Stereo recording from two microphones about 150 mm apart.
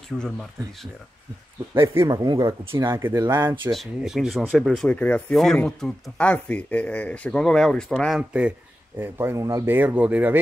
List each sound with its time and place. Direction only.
0.1 s speech: 5° left (ahead or behind)
1.7 s speech: 20° right (ahead or behind)
3.7 s speech: centre (ahead or behind)
8.2 s speech: 10° right (ahead or behind)